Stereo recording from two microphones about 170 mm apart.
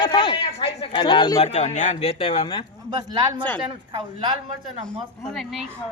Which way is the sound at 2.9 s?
25° right (ahead or behind).